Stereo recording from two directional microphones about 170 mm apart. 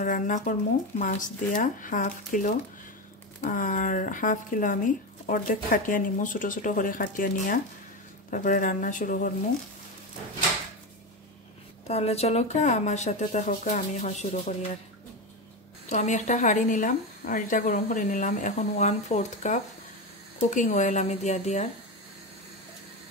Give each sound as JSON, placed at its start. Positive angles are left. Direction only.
{"t": 0.0, "sound": "speech", "side_deg": 50}
{"t": 11.9, "sound": "speech", "side_deg": 40}
{"t": 15.9, "sound": "speech", "side_deg": 45}